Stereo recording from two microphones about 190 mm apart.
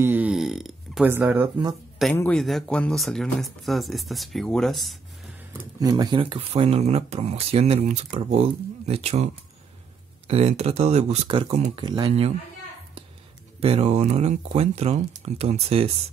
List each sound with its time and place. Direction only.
0.0 s burping: 10° right (ahead or behind)
1.1 s speech: 10° right (ahead or behind)
2.1 s speech: 5° left (ahead or behind)
5.8 s speech: 20° right (ahead or behind)
13.6 s speech: 30° right (ahead or behind)